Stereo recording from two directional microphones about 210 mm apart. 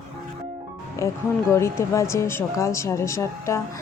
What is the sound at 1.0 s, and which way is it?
Speech, 15° left (ahead or behind).